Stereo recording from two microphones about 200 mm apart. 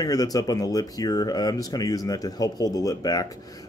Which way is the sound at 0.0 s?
20° left (ahead or behind).